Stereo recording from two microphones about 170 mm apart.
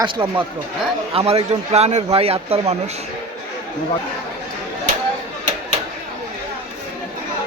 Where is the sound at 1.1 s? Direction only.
35° right (ahead or behind).